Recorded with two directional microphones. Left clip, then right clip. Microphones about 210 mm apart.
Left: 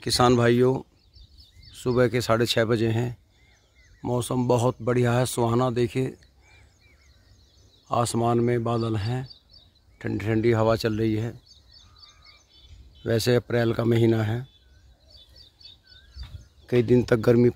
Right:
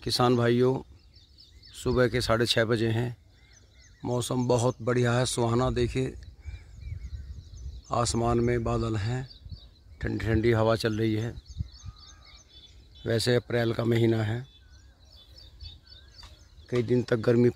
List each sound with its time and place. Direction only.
0.0 s speech: centre (ahead or behind)
7.9 s speech: 5° left (ahead or behind)
13.0 s speech: 10° left (ahead or behind)
15.6 s a sound: 55° left (ahead or behind)
16.6 s speech: 20° left (ahead or behind)